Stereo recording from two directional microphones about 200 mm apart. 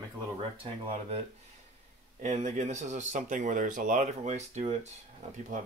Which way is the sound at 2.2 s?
35° right (ahead or behind).